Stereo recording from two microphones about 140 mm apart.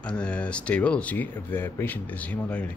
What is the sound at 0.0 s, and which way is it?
Speech, 5° left (ahead or behind).